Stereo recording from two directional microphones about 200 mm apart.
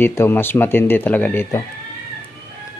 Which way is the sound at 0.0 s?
10° left (ahead or behind).